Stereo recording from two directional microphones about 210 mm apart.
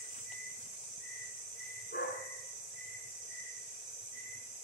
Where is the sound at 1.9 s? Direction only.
50° left (ahead or behind).